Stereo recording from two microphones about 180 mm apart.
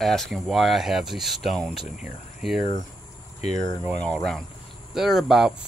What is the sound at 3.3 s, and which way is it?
Speech, 40° left (ahead or behind).